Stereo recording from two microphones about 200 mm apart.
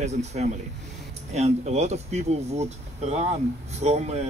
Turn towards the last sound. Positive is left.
turn(degrees=-35)  # may be behind; listen again after turning